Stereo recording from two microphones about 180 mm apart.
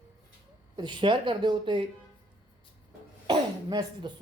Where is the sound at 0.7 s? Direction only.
25° right (ahead or behind).